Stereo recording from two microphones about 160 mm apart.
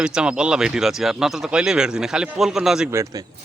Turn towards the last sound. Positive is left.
turn(degrees=-20)  # may be behind; listen again after turning